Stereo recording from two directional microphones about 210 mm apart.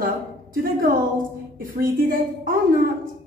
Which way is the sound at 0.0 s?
45° right (ahead or behind).